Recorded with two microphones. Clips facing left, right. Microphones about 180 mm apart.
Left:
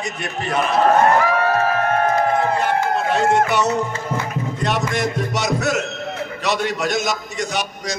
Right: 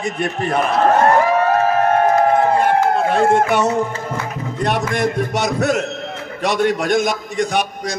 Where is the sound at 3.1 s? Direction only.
50° right (ahead or behind).